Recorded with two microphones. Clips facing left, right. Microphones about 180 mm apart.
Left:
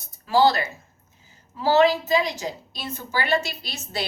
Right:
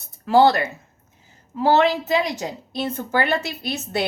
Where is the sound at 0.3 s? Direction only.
60° right (ahead or behind).